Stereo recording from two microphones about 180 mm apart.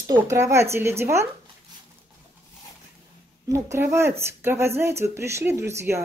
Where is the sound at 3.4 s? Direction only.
15° right (ahead or behind).